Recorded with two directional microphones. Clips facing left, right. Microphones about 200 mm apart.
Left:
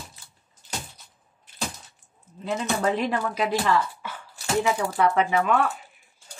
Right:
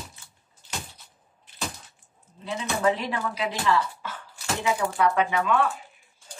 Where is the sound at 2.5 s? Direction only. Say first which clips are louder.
Even; 50° left (ahead or behind).